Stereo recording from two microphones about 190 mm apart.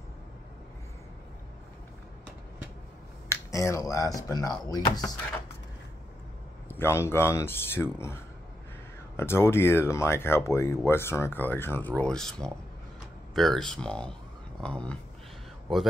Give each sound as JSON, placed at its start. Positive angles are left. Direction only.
{"t": 3.3, "sound": "speech", "side_deg": 15}
{"t": 6.7, "sound": "speech", "side_deg": 15}